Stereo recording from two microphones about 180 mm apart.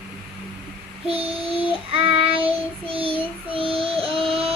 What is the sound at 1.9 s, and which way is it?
Child singing, 30° right (ahead or behind).